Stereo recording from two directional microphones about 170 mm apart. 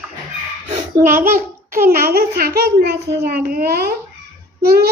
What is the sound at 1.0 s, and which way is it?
A child's voice, 55° right (ahead or behind).